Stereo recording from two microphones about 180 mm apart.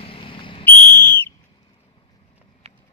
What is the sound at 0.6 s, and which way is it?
Whistle, 10° left (ahead or behind).